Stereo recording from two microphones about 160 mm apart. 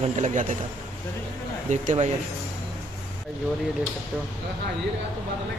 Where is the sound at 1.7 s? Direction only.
50° right (ahead or behind).